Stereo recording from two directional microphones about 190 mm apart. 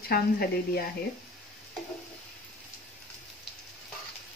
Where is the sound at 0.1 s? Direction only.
55° left (ahead or behind).